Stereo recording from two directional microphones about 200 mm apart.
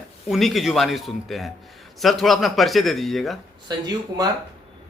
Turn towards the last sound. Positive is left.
turn(degrees=-20)  # may be behind; listen again after turning